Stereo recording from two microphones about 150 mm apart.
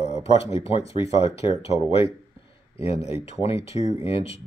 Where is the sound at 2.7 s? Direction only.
40° left (ahead or behind).